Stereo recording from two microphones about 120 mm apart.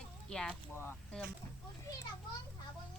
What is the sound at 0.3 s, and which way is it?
Speech, 5° left (ahead or behind).